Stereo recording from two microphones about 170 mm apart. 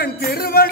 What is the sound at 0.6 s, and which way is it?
Yodeling, 60° left (ahead or behind).